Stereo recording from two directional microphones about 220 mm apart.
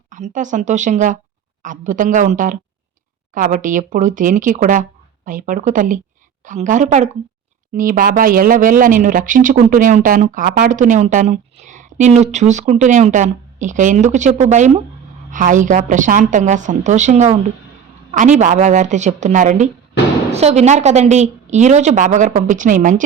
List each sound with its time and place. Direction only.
0.1 s speech: 35° right (ahead or behind)